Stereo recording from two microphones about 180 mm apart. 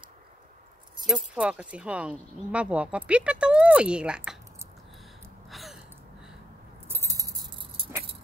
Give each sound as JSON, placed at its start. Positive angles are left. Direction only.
{"t": 1.0, "sound": "speech", "side_deg": -5}
{"t": 5.5, "sound": "gasp", "side_deg": 0}
{"t": 6.9, "sound": "keys jangling", "side_deg": -15}